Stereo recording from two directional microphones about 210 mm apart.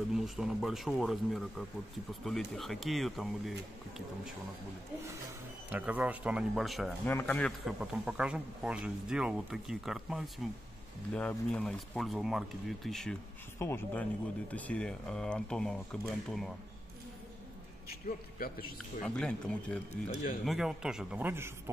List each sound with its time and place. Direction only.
0.1 s speech: centre (ahead or behind)
5.7 s speech: 5° right (ahead or behind)
18.0 s a man's voice: 45° left (ahead or behind)
19.0 s speech: 5° left (ahead or behind)